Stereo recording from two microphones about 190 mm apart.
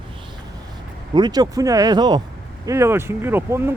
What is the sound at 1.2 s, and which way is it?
Speech, 20° right (ahead or behind).